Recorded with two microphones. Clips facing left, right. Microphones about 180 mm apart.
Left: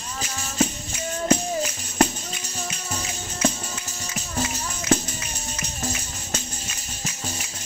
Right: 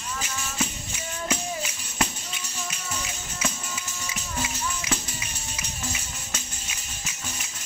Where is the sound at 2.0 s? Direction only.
40° left (ahead or behind).